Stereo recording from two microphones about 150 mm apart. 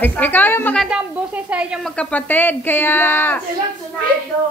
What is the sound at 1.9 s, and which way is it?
A woman's voice, 10° left (ahead or behind).